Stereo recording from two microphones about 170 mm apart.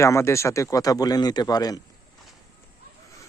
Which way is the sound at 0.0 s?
15° left (ahead or behind).